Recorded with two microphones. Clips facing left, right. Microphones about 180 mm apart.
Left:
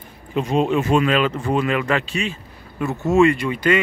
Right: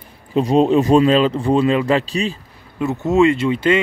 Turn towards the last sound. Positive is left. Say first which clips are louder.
# right 3 dB
turn(degrees=-25)  # may be behind; listen again after turning